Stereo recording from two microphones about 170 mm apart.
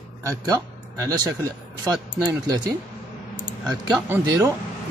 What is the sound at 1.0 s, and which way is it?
Speech, 20° right (ahead or behind).